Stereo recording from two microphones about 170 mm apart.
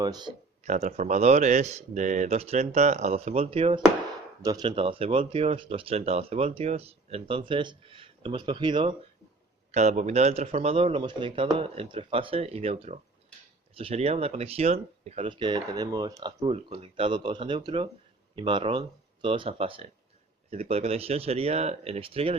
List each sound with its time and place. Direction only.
0.0 s speech: 25° right (ahead or behind)
0.6 s speech: 45° right (ahead or behind)
4.4 s speech: 25° right (ahead or behind)
4.7 s speech: 35° right (ahead or behind)
9.7 s speech: 40° right (ahead or behind); by 16.5 s 20° right (ahead or behind)
16.5 s speech: 35° right (ahead or behind)